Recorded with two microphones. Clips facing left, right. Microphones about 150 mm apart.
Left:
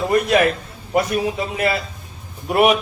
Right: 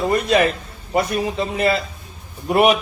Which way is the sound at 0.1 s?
Centre (ahead or behind).